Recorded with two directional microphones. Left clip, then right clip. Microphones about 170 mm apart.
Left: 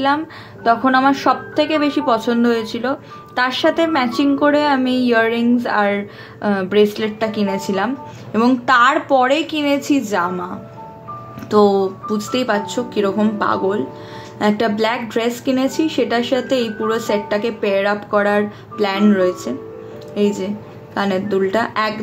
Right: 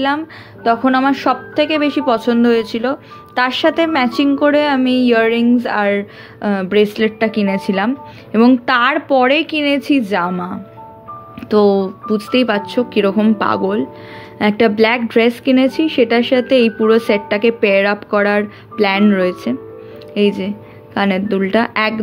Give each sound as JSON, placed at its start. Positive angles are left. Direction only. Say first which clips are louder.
{"t": 0.7, "sound": "a woman's voice", "louder": "even", "side_deg": -40}
{"t": 11.5, "sound": "a woman's voice", "louder": "right 1 dB", "side_deg": -40}